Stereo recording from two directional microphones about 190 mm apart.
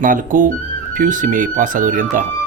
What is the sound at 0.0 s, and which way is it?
Speech, 45° right (ahead or behind).